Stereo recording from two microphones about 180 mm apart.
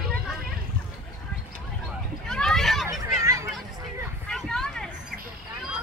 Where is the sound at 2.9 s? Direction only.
15° right (ahead or behind).